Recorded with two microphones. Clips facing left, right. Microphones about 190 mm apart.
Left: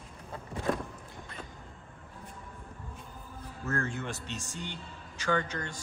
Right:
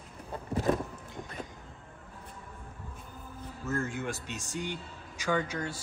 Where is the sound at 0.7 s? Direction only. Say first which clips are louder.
Right 3 dB; 20° right (ahead or behind).